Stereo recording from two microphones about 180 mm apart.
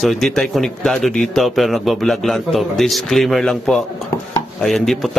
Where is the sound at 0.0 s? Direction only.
Centre (ahead or behind).